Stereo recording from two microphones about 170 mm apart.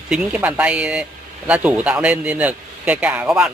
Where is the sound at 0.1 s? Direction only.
10° right (ahead or behind).